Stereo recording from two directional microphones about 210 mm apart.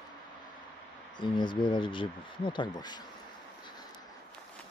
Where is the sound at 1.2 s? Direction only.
20° left (ahead or behind).